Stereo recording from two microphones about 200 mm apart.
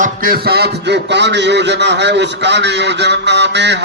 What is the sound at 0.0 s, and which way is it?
A man's voice, 45° right (ahead or behind).